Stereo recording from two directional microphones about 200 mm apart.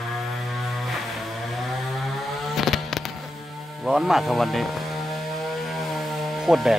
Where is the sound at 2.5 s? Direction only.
Centre (ahead or behind).